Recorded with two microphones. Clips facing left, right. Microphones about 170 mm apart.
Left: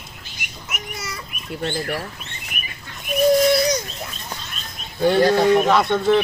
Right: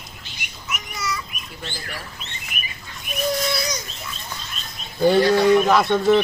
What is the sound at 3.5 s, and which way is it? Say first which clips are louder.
Bird: left 9 dB; 50° left (ahead or behind).